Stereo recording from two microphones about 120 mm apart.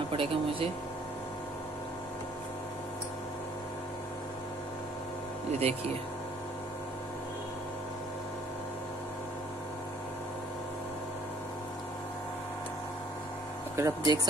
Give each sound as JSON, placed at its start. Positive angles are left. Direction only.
{"t": 0.1, "sound": "a sound", "side_deg": -50}
{"t": 5.5, "sound": "speech", "side_deg": -65}
{"t": 13.7, "sound": "speech", "side_deg": -30}